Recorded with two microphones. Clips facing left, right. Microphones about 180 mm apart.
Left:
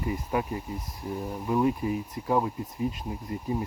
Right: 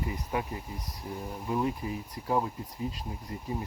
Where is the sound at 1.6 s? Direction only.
25° left (ahead or behind).